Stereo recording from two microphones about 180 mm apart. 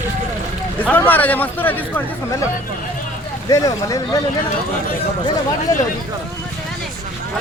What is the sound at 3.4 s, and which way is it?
Speech, 20° left (ahead or behind).